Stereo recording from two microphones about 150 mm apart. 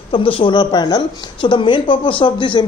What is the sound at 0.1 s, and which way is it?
Speech, 35° left (ahead or behind).